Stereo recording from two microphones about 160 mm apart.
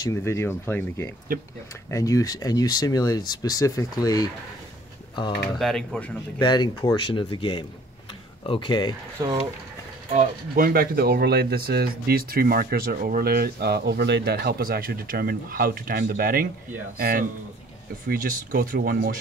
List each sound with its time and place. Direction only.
0.0 s speech: 15° left (ahead or behind)
5.6 s a man's voice: centre (ahead or behind)
6.4 s speech: 30° left (ahead or behind)
10.1 s speech: 60° right (ahead or behind)